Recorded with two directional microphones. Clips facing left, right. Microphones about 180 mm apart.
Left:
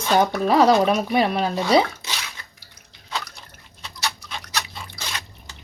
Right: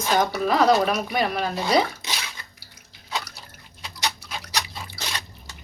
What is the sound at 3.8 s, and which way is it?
Dog, 5° right (ahead or behind).